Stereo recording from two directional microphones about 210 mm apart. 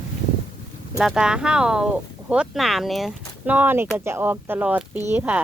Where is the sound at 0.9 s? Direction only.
5° right (ahead or behind).